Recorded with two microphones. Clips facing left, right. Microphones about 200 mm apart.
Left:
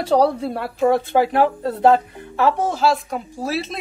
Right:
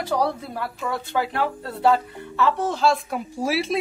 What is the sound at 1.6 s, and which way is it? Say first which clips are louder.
Speech: left 3 dB; 20° left (ahead or behind).